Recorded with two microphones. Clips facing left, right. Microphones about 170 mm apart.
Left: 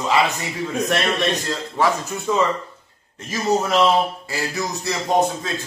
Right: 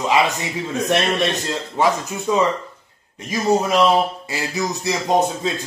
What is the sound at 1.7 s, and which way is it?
A man's voice, 20° right (ahead or behind).